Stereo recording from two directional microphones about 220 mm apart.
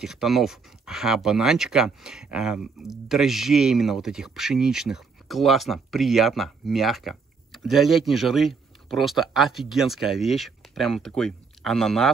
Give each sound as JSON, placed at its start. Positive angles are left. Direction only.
{"t": 0.0, "sound": "speech", "side_deg": 0}